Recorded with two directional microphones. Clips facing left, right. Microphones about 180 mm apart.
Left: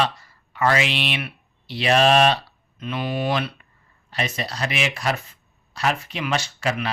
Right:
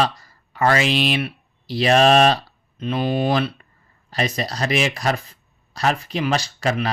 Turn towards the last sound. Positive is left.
turn(degrees=-35)  # may be behind; listen again after turning